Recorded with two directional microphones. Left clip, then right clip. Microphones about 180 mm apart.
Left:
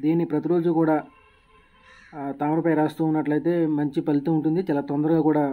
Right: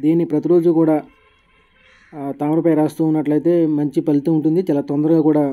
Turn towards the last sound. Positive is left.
turn(degrees=-35)  # may be behind; listen again after turning